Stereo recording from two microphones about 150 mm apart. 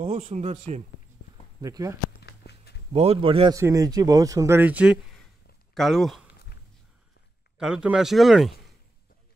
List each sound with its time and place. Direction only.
0.0 s speech: 40° right (ahead or behind)
1.6 s speech: 25° right (ahead or behind)
2.1 s a sound: 90° left
2.9 s a man's voice: 40° right (ahead or behind)
3.5 s speech: 20° right (ahead or behind); by 6.2 s centre (ahead or behind)
7.5 s speech: 5° right (ahead or behind)